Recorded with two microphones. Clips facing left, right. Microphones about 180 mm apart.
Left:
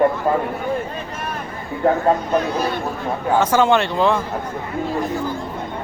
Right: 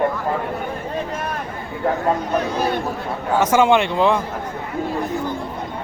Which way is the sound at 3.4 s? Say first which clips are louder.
Right 1 dB; 15° right (ahead or behind).